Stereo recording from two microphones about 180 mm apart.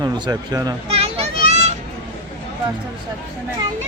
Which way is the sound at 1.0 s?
35° right (ahead or behind).